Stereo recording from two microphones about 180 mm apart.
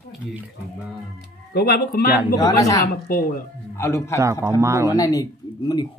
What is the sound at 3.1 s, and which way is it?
Speech, 50° left (ahead or behind).